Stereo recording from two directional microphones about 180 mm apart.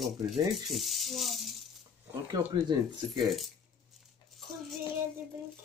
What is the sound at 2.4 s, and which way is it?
Speech, 10° right (ahead or behind).